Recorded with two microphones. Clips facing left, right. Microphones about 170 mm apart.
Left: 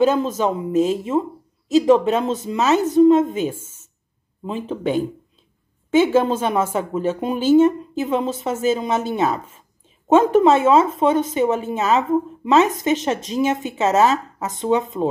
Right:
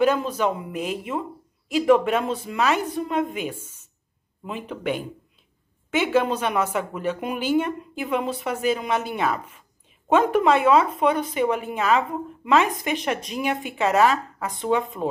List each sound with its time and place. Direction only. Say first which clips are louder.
0.0 s a woman's voice: left 3 dB; 25° left (ahead or behind)